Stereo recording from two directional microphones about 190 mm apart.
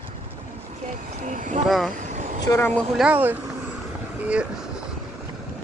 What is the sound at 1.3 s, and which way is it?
Speech, 40° right (ahead or behind).